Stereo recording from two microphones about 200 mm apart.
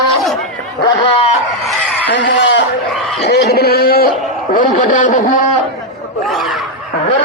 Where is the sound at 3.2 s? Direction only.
55° left (ahead or behind).